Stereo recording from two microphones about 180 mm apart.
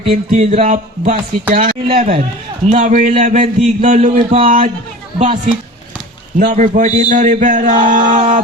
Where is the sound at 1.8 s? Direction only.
35° right (ahead or behind).